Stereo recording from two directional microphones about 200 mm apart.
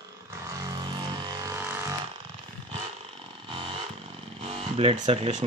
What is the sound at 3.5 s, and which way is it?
Chainsaw, 25° right (ahead or behind).